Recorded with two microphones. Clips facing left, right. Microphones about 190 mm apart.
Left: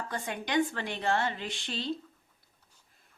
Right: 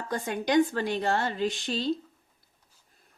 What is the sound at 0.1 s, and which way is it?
A woman's voice, 40° right (ahead or behind).